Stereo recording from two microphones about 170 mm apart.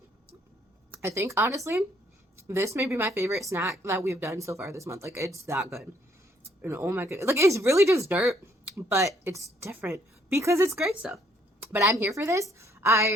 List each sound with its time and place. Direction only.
0.9 s speech: 15° right (ahead or behind)
5.5 s speech: centre (ahead or behind)
6.6 s speech: 15° right (ahead or behind)
8.2 s speech: centre (ahead or behind)
8.7 s speech: 15° right (ahead or behind)
10.8 s speech: centre (ahead or behind)
11.6 s a woman's voice: 15° right (ahead or behind)